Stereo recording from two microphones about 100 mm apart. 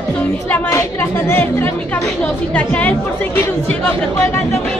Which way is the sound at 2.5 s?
15° left (ahead or behind).